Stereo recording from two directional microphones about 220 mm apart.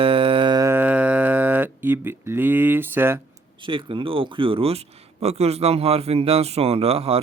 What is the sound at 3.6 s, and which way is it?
Speech, 25° right (ahead or behind).